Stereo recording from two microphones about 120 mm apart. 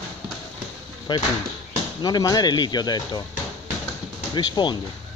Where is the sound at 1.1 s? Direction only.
35° left (ahead or behind).